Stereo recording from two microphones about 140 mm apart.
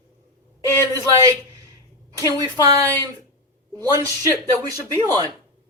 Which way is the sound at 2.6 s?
25° right (ahead or behind).